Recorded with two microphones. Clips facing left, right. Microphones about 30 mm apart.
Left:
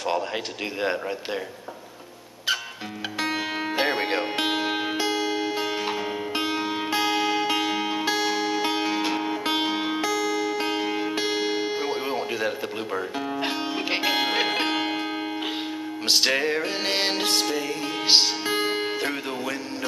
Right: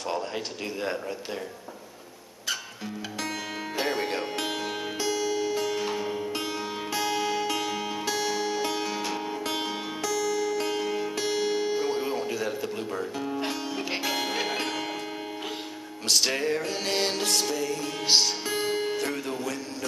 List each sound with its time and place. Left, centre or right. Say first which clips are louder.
3.2 s music: left 7 dB; left
16.1 s music: left 3 dB; left